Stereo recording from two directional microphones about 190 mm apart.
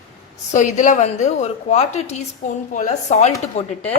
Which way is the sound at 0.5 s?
40° left (ahead or behind).